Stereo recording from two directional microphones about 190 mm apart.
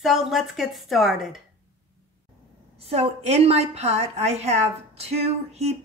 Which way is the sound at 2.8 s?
30° right (ahead or behind).